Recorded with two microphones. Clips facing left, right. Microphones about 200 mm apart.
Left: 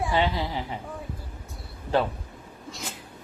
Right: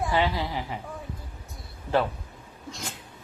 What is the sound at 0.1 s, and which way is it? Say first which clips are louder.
Speech: even; 25° left (ahead or behind).